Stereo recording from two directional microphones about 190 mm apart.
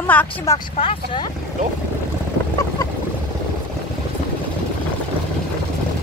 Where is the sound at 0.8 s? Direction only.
30° left (ahead or behind).